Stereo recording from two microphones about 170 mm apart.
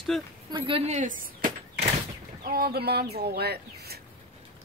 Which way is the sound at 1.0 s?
50° right (ahead or behind).